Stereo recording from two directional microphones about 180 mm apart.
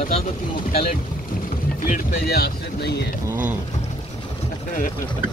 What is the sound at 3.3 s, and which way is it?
Mechanisms, 10° right (ahead or behind).